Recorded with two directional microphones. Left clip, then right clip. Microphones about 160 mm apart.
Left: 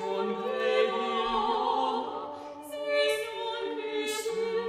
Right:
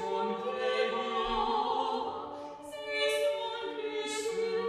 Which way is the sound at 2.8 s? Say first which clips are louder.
Left 4 dB; 15° left (ahead or behind).